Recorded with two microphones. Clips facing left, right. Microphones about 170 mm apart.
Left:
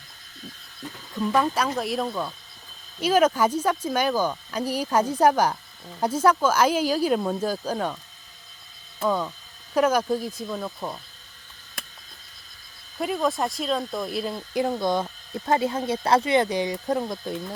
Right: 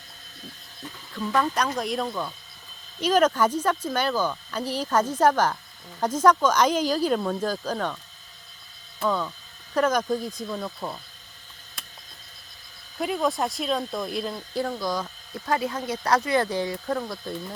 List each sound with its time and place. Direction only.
1.1 s speech: 10° left (ahead or behind)
9.0 s speech: 10° left (ahead or behind)
13.0 s speech: centre (ahead or behind)
14.7 s speech: 25° left (ahead or behind)